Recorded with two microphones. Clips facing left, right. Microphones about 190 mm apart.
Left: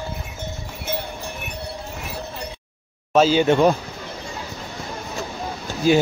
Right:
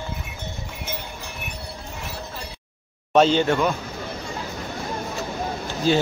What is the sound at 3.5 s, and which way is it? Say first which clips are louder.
Speech: left 5 dB; 30° left (ahead or behind).